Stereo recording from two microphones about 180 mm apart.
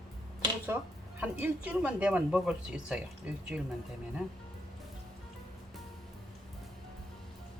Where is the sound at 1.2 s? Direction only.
10° right (ahead or behind).